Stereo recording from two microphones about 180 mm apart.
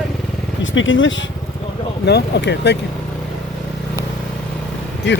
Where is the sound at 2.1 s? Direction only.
70° left (ahead or behind).